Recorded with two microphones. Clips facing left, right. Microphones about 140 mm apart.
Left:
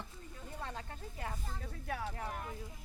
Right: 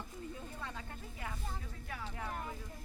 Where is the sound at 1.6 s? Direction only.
65° left (ahead or behind).